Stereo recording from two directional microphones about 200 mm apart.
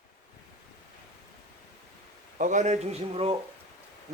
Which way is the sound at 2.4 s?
40° right (ahead or behind).